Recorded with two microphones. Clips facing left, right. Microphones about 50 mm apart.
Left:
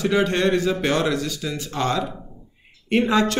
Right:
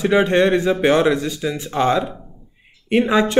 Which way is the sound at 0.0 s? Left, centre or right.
Centre.